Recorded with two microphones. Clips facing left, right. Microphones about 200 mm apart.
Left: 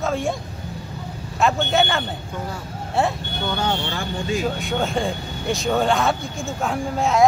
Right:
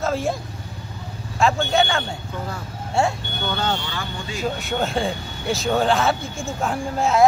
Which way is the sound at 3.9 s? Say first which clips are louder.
Left 5 dB; 45° left (ahead or behind).